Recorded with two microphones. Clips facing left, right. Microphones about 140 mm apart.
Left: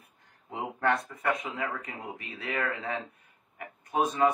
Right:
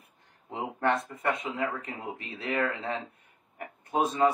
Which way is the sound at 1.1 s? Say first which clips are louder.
Even; 25° right (ahead or behind).